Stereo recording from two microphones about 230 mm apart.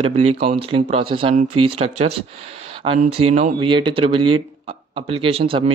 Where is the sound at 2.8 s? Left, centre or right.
Right.